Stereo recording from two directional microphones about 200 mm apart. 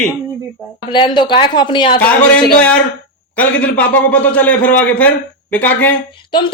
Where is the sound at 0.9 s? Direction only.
25° left (ahead or behind).